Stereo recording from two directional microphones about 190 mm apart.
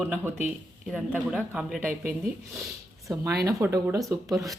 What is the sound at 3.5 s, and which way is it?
Speech, 15° right (ahead or behind).